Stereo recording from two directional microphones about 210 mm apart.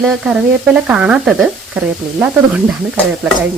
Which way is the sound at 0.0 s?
5° right (ahead or behind).